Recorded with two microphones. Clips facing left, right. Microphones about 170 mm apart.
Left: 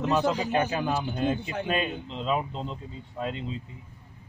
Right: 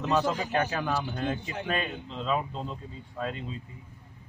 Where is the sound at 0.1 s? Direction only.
15° left (ahead or behind).